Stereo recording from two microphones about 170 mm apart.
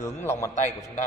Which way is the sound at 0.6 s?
45° left (ahead or behind).